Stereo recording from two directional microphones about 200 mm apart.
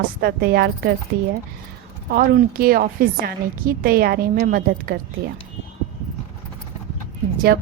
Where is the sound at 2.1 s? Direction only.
45° right (ahead or behind).